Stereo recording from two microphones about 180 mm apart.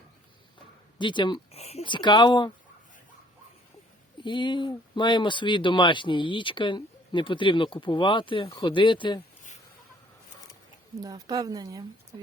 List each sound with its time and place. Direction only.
0.9 s speech: 25° left (ahead or behind)
4.2 s speech: 25° left (ahead or behind)
11.0 s a woman's voice: 20° right (ahead or behind)